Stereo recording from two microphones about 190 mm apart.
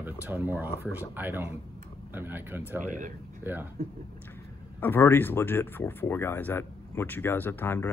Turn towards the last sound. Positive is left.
turn(degrees=10)  # may be behind; listen again after turning